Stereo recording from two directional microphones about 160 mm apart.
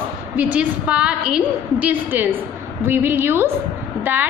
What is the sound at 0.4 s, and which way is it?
A woman's voice, 10° right (ahead or behind).